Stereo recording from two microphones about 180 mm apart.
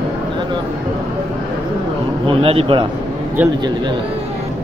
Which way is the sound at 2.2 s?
30° right (ahead or behind).